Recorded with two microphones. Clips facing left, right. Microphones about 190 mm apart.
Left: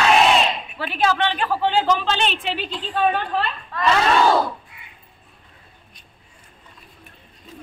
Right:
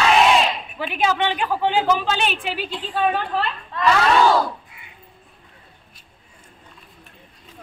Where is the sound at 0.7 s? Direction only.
15° right (ahead or behind).